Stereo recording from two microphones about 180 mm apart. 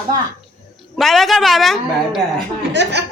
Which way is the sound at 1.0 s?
Centre (ahead or behind).